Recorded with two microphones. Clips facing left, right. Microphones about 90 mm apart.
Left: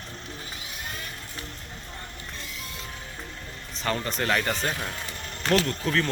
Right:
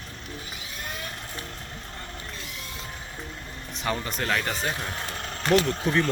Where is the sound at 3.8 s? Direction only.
10° right (ahead or behind).